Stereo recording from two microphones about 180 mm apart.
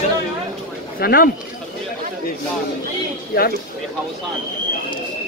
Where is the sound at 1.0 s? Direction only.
55° left (ahead or behind).